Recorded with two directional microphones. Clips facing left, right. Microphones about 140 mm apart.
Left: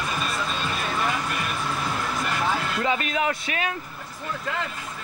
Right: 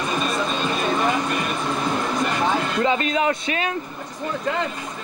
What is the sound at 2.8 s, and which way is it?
Speech, 5° left (ahead or behind).